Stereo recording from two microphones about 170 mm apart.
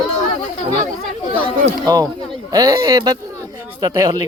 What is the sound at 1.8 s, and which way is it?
Speech, 25° right (ahead or behind).